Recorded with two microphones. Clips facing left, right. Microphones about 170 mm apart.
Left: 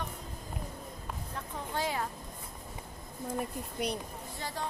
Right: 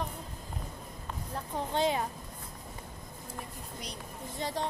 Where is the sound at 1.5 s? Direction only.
25° right (ahead or behind).